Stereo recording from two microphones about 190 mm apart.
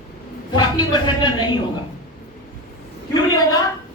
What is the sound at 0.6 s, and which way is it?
Speech, 25° left (ahead or behind).